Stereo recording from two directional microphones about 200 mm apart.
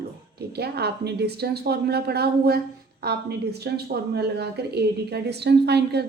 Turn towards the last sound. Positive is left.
turn(degrees=-55)  # may be behind; listen again after turning